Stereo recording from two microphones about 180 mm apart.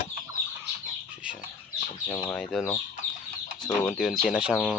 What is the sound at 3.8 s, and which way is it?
Speech, centre (ahead or behind).